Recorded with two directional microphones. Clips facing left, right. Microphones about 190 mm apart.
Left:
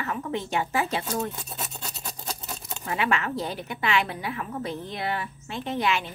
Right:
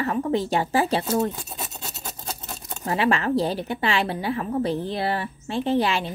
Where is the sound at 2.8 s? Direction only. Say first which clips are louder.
Right 5 dB; 35° right (ahead or behind).